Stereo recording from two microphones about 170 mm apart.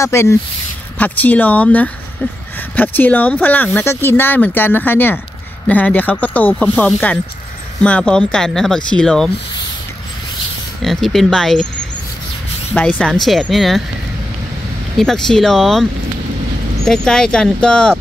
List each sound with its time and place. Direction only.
0.0 s speech: 15° left (ahead or behind)
10.8 s speech: centre (ahead or behind)
12.7 s speech: 5° left (ahead or behind)
15.0 s speech: 5° left (ahead or behind)